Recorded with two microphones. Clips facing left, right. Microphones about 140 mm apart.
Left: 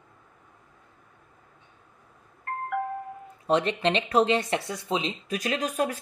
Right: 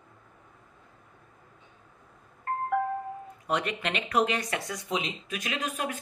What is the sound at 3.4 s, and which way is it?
Speech, 30° left (ahead or behind).